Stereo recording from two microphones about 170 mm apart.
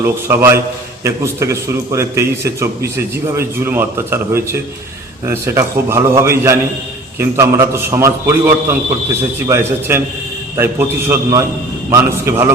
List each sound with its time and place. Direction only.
0.0 s a man's voice: 15° right (ahead or behind)